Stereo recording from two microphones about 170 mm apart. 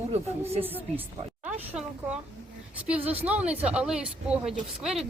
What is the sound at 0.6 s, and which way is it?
A woman's voice, 10° right (ahead or behind).